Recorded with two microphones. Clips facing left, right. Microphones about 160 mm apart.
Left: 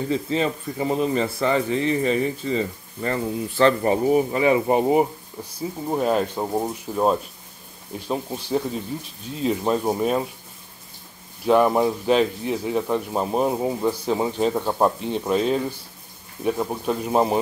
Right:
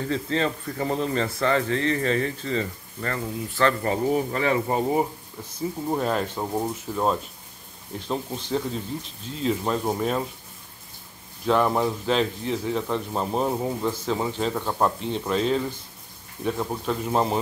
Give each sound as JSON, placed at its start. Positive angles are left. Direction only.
{"t": 0.1, "sound": "speech", "side_deg": 15}
{"t": 11.4, "sound": "speech", "side_deg": 15}